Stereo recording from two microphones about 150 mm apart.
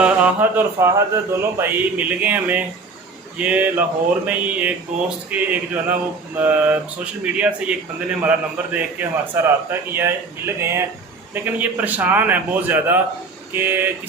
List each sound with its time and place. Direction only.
0.0 s speech: 10° right (ahead or behind)